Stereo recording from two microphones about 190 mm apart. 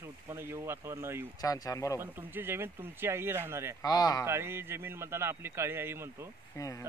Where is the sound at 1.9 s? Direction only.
10° right (ahead or behind).